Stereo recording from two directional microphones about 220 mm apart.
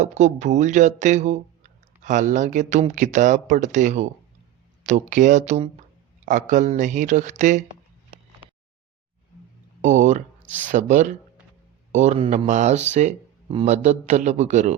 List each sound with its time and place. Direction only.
0.0 s speech: 30° right (ahead or behind)
9.8 s speech: 35° right (ahead or behind)